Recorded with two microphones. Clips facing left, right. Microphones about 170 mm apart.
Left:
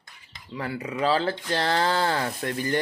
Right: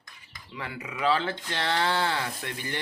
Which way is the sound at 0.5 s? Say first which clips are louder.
Left 7 dB; 35° left (ahead or behind).